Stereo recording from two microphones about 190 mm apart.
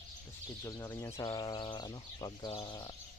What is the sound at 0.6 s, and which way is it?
Speech, 15° left (ahead or behind).